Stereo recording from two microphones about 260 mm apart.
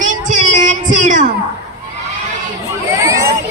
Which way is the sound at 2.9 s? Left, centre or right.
Centre.